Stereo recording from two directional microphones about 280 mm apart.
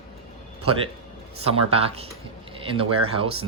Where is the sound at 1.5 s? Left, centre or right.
Right.